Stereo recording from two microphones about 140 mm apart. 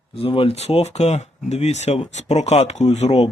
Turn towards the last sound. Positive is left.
turn(degrees=50)  # may be behind; listen again after turning